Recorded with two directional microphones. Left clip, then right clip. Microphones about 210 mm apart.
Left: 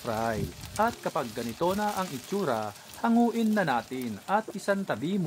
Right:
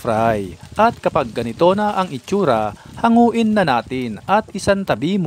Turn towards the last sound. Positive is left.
turn(degrees=-50)  # may be behind; listen again after turning